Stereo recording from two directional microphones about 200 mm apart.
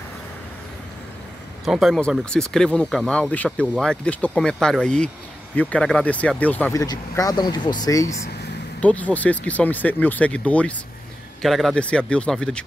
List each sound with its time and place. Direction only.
1.7 s speech: centre (ahead or behind); by 8.1 s 20° left (ahead or behind)
8.8 s speech: 5° left (ahead or behind)